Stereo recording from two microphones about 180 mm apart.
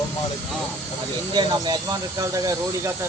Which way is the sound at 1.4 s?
20° right (ahead or behind).